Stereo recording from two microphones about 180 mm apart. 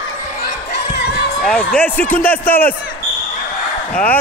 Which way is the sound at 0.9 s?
70° left (ahead or behind).